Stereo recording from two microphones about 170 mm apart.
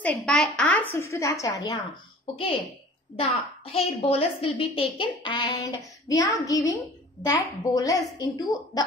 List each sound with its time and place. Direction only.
0.0 s a woman's voice: 5° left (ahead or behind)
0.9 s a woman's voice: 15° left (ahead or behind)
3.2 s a woman's voice: 35° left (ahead or behind)